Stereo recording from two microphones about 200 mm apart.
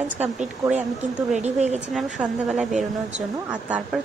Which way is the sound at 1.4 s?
35° right (ahead or behind).